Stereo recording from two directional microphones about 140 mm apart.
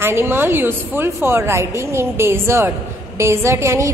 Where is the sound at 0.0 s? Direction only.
15° right (ahead or behind).